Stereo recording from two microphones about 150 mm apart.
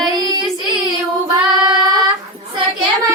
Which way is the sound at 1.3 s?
25° right (ahead or behind).